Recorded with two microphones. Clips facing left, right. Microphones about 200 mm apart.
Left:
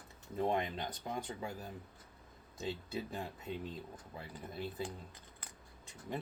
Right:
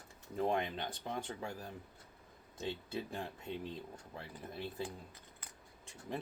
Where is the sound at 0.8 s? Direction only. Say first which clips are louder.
Even; 30° right (ahead or behind).